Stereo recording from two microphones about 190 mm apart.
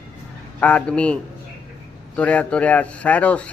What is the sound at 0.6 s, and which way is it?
A man's voice, 5° left (ahead or behind).